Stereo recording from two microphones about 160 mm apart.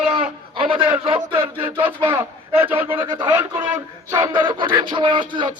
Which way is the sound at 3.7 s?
20° right (ahead or behind).